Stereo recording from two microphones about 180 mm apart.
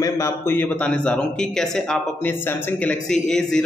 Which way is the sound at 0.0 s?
15° left (ahead or behind).